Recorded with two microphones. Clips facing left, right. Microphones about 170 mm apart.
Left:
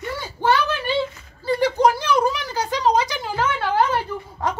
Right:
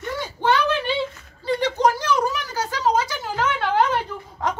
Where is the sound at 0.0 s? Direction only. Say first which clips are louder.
Even; 5° left (ahead or behind).